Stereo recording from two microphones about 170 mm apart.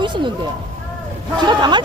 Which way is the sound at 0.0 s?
25° right (ahead or behind).